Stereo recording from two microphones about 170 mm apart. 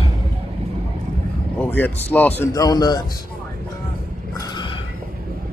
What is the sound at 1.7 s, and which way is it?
Speech, 10° left (ahead or behind).